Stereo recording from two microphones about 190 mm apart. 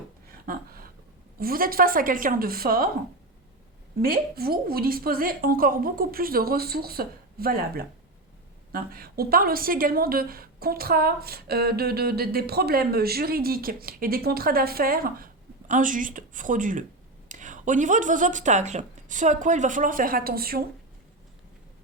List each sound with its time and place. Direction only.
0.4 s a woman's voice: 50° right (ahead or behind)
4.0 s a woman's voice: 55° right (ahead or behind)